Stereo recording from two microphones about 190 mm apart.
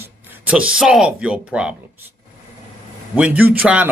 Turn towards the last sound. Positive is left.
turn(degrees=-10)  # may be behind; listen again after turning